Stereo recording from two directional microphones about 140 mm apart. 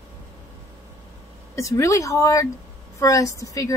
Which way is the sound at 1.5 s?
20° left (ahead or behind).